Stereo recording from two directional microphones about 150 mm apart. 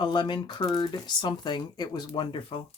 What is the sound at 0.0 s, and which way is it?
Speech, 30° left (ahead or behind).